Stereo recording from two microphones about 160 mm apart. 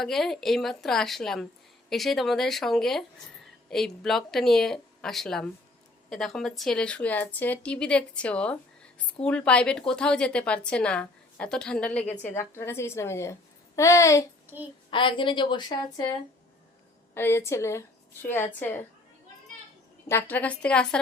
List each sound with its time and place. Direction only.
0.0 s a woman's voice: centre (ahead or behind); by 14.3 s 20° left (ahead or behind)
14.8 s a woman's voice: 30° left (ahead or behind)
17.2 s a woman's voice: 15° left (ahead or behind)
20.1 s a woman's voice: 15° left (ahead or behind)